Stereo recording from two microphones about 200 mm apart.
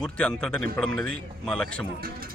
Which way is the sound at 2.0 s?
45° right (ahead or behind).